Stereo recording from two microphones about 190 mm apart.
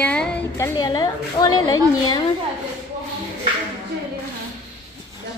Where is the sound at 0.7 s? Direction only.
20° left (ahead or behind).